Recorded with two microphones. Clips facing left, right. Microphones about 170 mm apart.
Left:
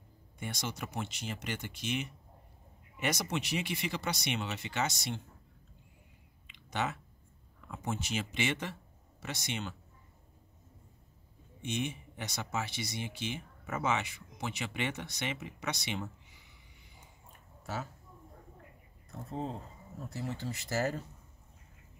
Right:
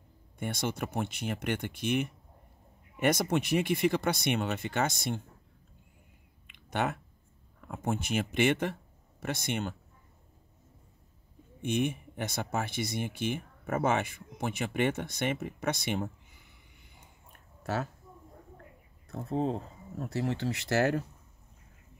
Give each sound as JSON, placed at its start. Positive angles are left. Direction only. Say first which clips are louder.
{"t": 0.4, "sound": "speech", "louder": "right 6 dB", "side_deg": -55}
{"t": 6.4, "sound": "a sound", "louder": "right 4 dB", "side_deg": -55}
{"t": 7.6, "sound": "speech", "louder": "right 5 dB", "side_deg": -55}
{"t": 11.6, "sound": "speech", "louder": "right 6 dB", "side_deg": -55}
{"t": 19.0, "sound": "speech", "louder": "right 8 dB", "side_deg": -65}